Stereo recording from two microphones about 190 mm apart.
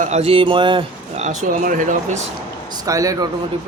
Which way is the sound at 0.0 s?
35° right (ahead or behind).